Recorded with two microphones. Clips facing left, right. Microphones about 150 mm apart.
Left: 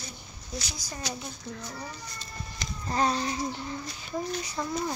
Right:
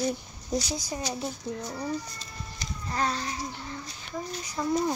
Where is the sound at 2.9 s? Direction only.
20° left (ahead or behind).